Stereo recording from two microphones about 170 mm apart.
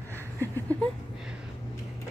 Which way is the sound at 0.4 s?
10° left (ahead or behind).